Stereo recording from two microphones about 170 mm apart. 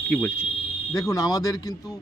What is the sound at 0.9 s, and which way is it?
Speech, 20° left (ahead or behind).